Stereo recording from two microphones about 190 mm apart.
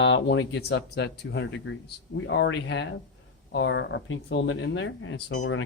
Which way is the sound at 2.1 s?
80° left.